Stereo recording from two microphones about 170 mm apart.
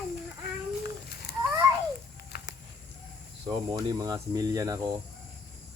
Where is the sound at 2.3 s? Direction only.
65° left (ahead or behind).